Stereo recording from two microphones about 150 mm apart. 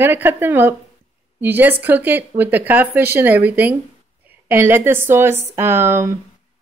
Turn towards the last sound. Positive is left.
turn(degrees=-15)  # may be behind; listen again after turning